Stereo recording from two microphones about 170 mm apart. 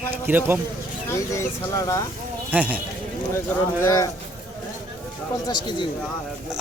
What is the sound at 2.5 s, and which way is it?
Speech, 10° right (ahead or behind).